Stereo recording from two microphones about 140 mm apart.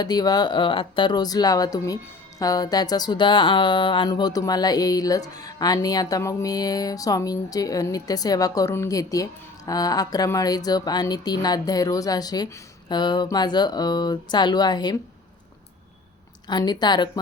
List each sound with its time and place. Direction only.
0.0 s a sound: 30° left (ahead or behind)
12.9 s speech: 30° left (ahead or behind)
16.5 s speech: 30° left (ahead or behind)